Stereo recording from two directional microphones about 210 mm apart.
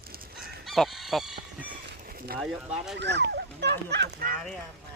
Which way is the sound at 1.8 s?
45° right (ahead or behind).